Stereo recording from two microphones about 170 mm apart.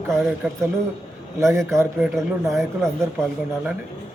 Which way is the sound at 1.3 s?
15° right (ahead or behind).